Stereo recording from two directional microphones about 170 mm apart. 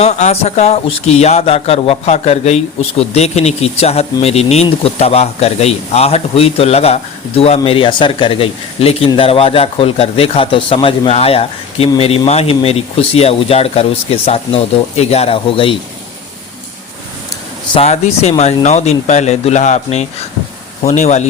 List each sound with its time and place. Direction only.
0.0 s speech: 40° left (ahead or behind)
17.7 s speech: 40° left (ahead or behind)